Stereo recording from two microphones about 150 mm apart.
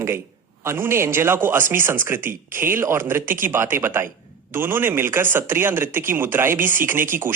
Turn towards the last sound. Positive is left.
turn(degrees=-15)  # may be behind; listen again after turning